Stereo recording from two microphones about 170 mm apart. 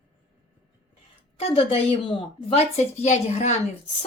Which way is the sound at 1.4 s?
35° left (ahead or behind).